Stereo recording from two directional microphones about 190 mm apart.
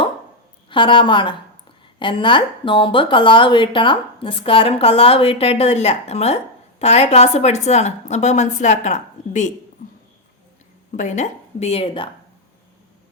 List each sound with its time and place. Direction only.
0.7 s a woman's voice: 25° left (ahead or behind)
10.9 s speech: 40° left (ahead or behind)